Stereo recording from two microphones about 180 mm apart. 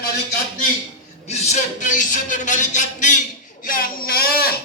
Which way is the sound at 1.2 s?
40° left (ahead or behind).